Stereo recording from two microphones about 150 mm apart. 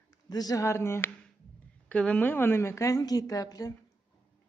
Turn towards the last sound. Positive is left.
turn(degrees=25)  # may be behind; listen again after turning